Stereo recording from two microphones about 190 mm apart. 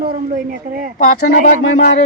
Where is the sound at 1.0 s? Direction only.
50° left (ahead or behind).